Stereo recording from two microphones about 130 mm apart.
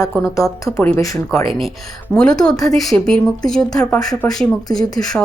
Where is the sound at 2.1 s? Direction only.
5° left (ahead or behind).